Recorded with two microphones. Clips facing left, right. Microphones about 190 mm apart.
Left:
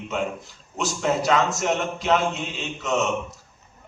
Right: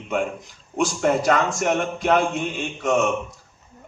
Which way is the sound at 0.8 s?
50° right (ahead or behind).